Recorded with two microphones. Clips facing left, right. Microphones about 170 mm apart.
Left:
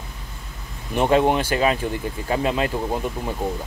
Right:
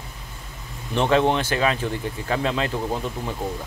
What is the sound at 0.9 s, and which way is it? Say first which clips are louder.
Speech: left 2 dB; 15° left (ahead or behind).